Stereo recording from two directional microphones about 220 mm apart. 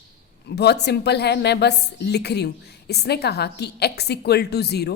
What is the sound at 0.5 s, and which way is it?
Speech, 50° left (ahead or behind).